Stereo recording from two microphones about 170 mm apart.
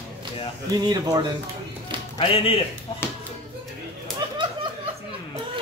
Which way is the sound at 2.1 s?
35° left (ahead or behind).